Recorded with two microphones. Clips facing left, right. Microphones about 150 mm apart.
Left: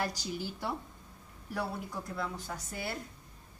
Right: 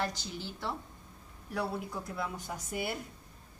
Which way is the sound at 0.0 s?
10° left (ahead or behind).